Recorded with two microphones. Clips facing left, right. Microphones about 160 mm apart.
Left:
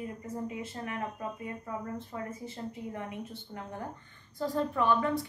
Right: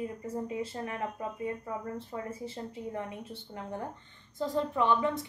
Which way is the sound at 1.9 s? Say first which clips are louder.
Right 1 dB; 30° right (ahead or behind).